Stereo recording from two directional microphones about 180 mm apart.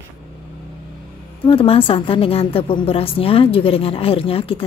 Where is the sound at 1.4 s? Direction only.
30° left (ahead or behind).